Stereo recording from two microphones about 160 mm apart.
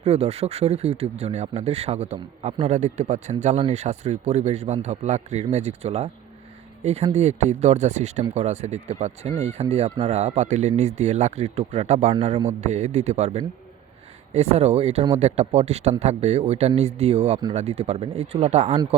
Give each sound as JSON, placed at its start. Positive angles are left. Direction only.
{"t": 0.0, "sound": "a man's voice", "side_deg": -40}